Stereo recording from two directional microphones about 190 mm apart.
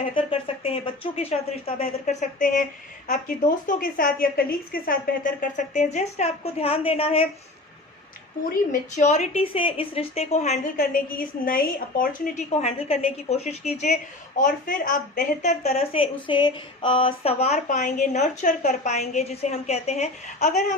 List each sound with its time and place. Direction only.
0.3 s a woman's voice: 30° left (ahead or behind)
8.7 s a woman's voice: 35° left (ahead or behind)